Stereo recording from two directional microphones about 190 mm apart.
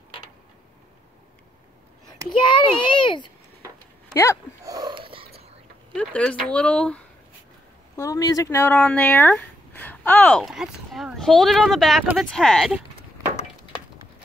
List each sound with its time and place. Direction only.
2.2 s a child's voice: 25° left (ahead or behind)
4.1 s speech: 15° left (ahead or behind)
4.6 s a sound: 20° right (ahead or behind)
5.9 s speech: 5° left (ahead or behind)
7.9 s speech: 15° left (ahead or behind); by 12.8 s centre (ahead or behind)